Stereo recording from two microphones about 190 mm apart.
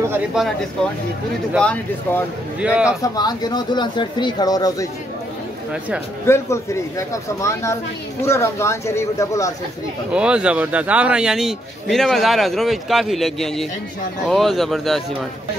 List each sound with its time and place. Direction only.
0.1 s a man's voice: 5° right (ahead or behind)
1.6 s speech: 5° left (ahead or behind)
2.6 s a man's voice: 5° right (ahead or behind)
3.0 s speech: 20° left (ahead or behind)
6.2 s speech: 15° left (ahead or behind)
10.1 s a man's voice: 5° right (ahead or behind)